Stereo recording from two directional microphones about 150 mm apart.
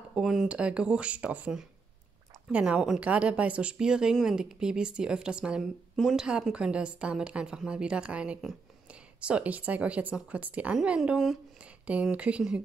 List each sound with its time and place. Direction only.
0.1 s a woman's voice: 5° right (ahead or behind)